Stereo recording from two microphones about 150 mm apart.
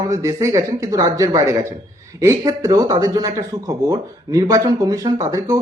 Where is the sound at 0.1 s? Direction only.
20° right (ahead or behind).